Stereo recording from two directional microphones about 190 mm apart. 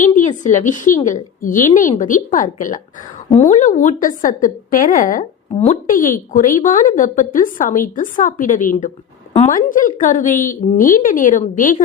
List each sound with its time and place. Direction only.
0.0 s a woman's voice: 40° left (ahead or behind)